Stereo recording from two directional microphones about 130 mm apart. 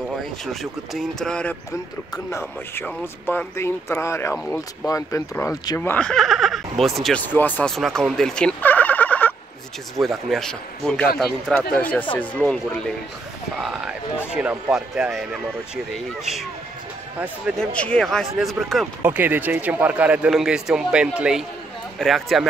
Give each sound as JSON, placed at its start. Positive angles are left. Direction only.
{"t": 0.5, "sound": "speech", "side_deg": 0}
{"t": 5.8, "sound": "speech", "side_deg": 10}
{"t": 7.2, "sound": "speech", "side_deg": 15}
{"t": 7.7, "sound": "turkey", "side_deg": 0}
{"t": 9.9, "sound": "a man's voice", "side_deg": 0}
{"t": 17.6, "sound": "speech", "side_deg": 10}
{"t": 19.0, "sound": "a man's voice", "side_deg": -15}